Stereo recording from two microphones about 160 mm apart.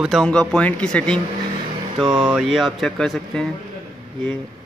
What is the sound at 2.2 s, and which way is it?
Speech, centre (ahead or behind).